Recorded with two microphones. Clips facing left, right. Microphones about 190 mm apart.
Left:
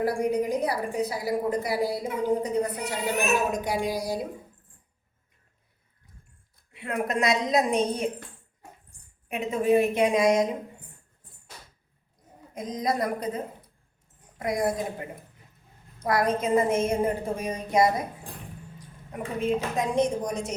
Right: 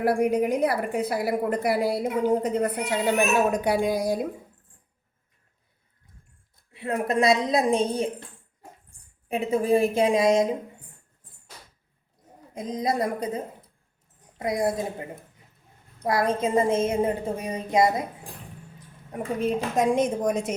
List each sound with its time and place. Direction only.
0.0 s a woman's voice: 60° right (ahead or behind)
6.7 s a woman's voice: 30° right (ahead or behind)
9.3 s a woman's voice: 35° right (ahead or behind)
12.5 s a woman's voice: 25° right (ahead or behind)
16.0 s a woman's voice: 25° right (ahead or behind)
19.1 s a woman's voice: 45° right (ahead or behind)